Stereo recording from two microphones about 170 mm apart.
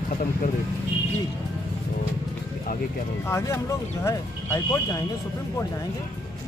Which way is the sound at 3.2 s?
15° left (ahead or behind).